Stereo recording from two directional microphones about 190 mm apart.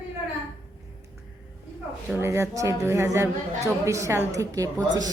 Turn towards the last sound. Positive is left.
turn(degrees=-15)  # may be behind; listen again after turning